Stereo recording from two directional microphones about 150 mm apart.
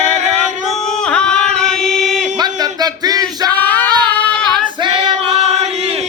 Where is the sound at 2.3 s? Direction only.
25° right (ahead or behind).